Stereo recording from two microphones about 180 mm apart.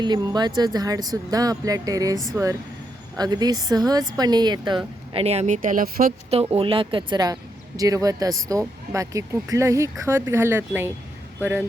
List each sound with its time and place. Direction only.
0.0 s speech: 25° right (ahead or behind)
5.1 s speech: 35° right (ahead or behind)
6.3 s speech: 35° right (ahead or behind); by 10.9 s 10° right (ahead or behind)